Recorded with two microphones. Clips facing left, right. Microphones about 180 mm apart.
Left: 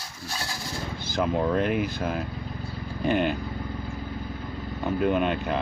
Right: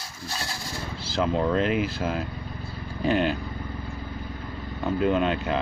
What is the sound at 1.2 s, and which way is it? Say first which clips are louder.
Dishes: right 1 dB; 10° left (ahead or behind).